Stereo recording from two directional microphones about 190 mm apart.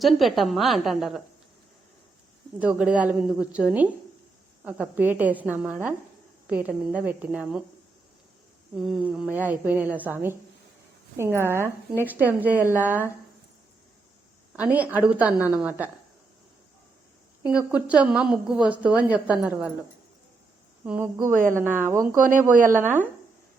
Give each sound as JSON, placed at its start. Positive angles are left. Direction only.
{"t": 0.0, "sound": "a woman's voice", "side_deg": 0}
{"t": 2.6, "sound": "a woman's voice", "side_deg": -5}
{"t": 8.7, "sound": "a woman's voice", "side_deg": 0}
{"t": 14.5, "sound": "a woman's voice", "side_deg": -10}
{"t": 17.4, "sound": "a woman's voice", "side_deg": -5}
{"t": 20.8, "sound": "a woman's voice", "side_deg": -10}